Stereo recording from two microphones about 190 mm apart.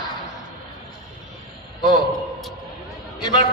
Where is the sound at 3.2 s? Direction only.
20° left (ahead or behind).